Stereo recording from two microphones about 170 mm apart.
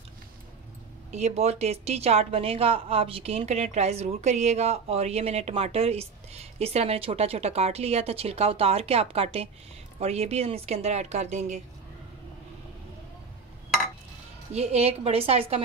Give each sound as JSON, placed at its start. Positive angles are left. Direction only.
{"t": 1.1, "sound": "a woman's voice", "side_deg": -40}
{"t": 14.5, "sound": "a woman's voice", "side_deg": -40}